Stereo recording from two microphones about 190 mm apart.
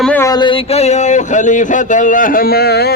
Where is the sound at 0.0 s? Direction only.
10° left (ahead or behind).